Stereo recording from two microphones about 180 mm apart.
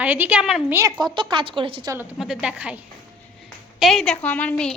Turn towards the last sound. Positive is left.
turn(degrees=5)  # may be behind; listen again after turning